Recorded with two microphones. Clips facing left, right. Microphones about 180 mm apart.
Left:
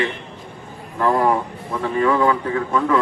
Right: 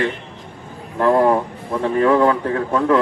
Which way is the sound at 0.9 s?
40° right (ahead or behind).